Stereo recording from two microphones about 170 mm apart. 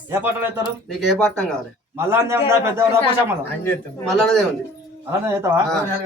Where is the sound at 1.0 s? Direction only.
5° left (ahead or behind).